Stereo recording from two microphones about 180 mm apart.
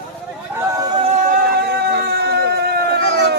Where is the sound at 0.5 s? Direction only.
15° right (ahead or behind).